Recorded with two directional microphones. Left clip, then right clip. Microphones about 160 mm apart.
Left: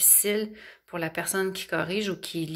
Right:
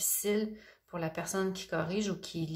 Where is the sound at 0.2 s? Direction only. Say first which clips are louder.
Left 5 dB; 20° left (ahead or behind).